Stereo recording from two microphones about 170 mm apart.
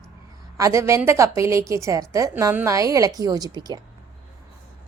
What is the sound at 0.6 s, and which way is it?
A woman's voice, 20° right (ahead or behind).